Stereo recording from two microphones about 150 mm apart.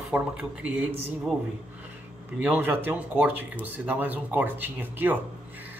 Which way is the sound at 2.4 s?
10° right (ahead or behind).